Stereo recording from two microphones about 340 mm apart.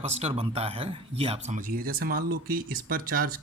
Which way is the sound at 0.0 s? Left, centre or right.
Centre.